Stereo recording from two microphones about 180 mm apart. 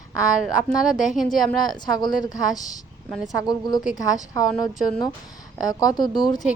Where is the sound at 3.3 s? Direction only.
20° left (ahead or behind).